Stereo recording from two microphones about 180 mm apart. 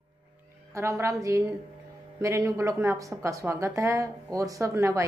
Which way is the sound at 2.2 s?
15° right (ahead or behind).